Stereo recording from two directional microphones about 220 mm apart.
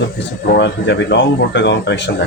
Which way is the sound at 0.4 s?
50° left (ahead or behind).